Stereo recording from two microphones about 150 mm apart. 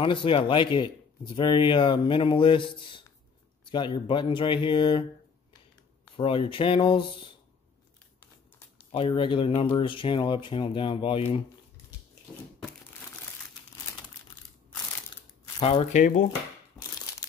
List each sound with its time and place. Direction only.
0.0 s speech: 35° left (ahead or behind)
6.1 s speech: 35° left (ahead or behind)
8.9 s speech: 35° left (ahead or behind)
15.6 s speech: 40° left (ahead or behind)
15.9 s speech: 55° left (ahead or behind)
16.8 s a sound: 25° left (ahead or behind)